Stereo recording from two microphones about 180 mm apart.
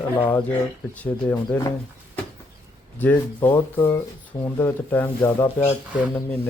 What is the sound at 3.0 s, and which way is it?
Speech, 10° left (ahead or behind).